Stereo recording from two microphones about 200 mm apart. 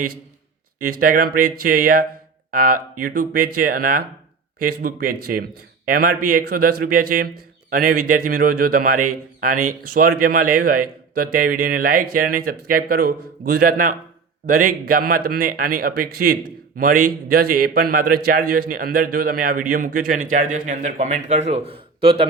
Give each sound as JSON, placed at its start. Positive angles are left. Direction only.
{"t": 0.8, "sound": "speech", "side_deg": -45}